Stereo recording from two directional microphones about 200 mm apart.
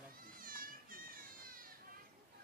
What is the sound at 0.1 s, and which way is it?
Cat, 45° right (ahead or behind).